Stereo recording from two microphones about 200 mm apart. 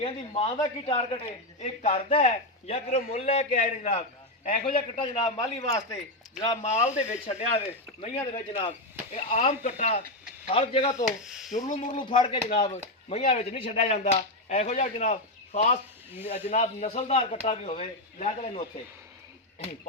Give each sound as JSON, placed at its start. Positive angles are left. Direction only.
{"t": 0.0, "sound": "a man's voice", "side_deg": 30}
{"t": 6.7, "sound": "a man's voice", "side_deg": 35}
{"t": 11.0, "sound": "speech", "side_deg": 0}
{"t": 11.5, "sound": "a man's voice", "side_deg": 40}
{"t": 11.9, "sound": "a man's voice", "side_deg": 25}